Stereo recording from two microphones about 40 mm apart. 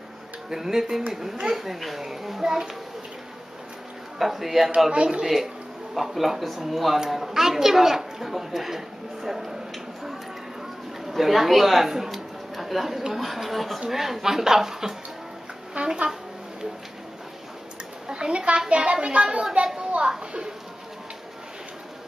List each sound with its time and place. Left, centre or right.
0.5 s a woman's voice: centre
2.4 s a woman's voice: centre
4.2 s speech: centre
4.9 s a child's voice: right
5.2 s a woman's voice: centre
11.1 s a woman's voice: centre
15.7 s speech: right
18.0 s a child's voice: right